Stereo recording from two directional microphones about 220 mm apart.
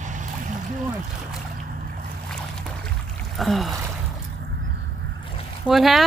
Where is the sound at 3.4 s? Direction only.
Centre (ahead or behind).